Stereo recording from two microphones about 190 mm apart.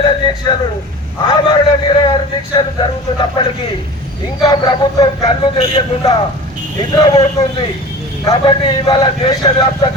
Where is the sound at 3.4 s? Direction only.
25° left (ahead or behind).